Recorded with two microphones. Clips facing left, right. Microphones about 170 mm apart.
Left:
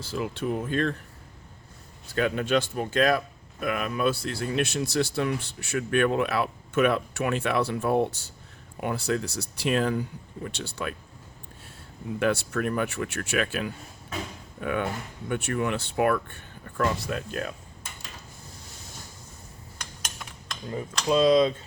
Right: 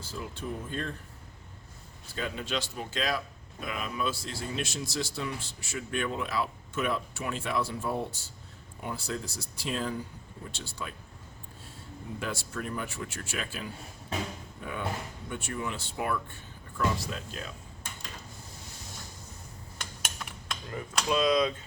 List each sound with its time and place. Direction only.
0.0 s speech: 85° left
2.1 s a man's voice: 65° left (ahead or behind)
12.2 s a man's voice: 70° left (ahead or behind)
20.7 s speech: 25° left (ahead or behind)